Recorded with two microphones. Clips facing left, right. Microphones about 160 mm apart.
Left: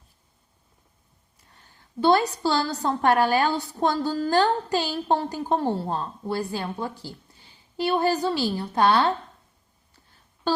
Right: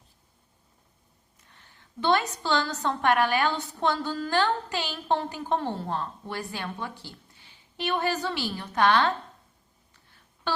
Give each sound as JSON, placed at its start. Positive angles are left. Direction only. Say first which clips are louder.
{"t": 1.5, "sound": "a woman's voice", "louder": "left 2 dB", "side_deg": 35}
{"t": 7.8, "sound": "a woman's voice", "louder": "left 5 dB", "side_deg": 30}